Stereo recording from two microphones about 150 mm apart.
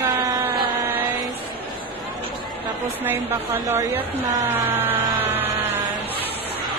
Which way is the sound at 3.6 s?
20° right (ahead or behind).